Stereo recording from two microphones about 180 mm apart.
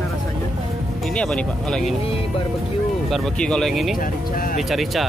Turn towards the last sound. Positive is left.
turn(degrees=0)  # may be behind; listen again after turning